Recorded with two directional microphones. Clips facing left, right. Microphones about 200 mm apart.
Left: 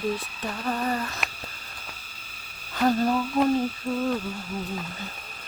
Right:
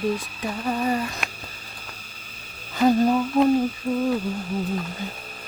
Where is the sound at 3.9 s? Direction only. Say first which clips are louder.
Right 4 dB; 15° right (ahead or behind).